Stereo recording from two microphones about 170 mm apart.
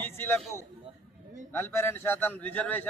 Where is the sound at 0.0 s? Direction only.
10° left (ahead or behind).